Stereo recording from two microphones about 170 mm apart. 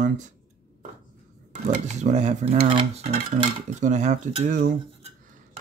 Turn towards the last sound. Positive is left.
turn(degrees=-50)  # may be behind; listen again after turning